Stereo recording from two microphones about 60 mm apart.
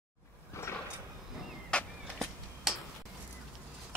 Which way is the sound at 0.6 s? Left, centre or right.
Left.